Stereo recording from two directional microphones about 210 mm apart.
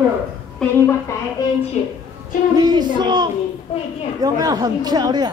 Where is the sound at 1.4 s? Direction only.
15° left (ahead or behind).